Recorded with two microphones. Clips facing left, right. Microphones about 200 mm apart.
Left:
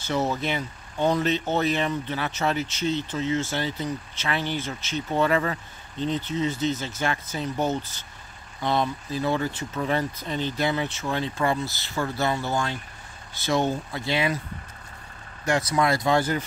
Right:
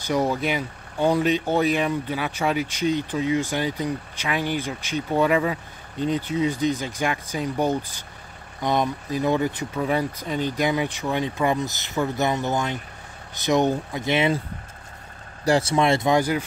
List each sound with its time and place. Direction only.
0.0 s speech: 15° right (ahead or behind)
15.4 s speech: 30° right (ahead or behind); by 16.4 s 10° right (ahead or behind)